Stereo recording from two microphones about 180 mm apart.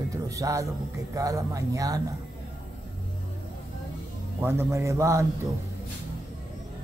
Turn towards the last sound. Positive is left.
turn(degrees=-15)  # may be behind; listen again after turning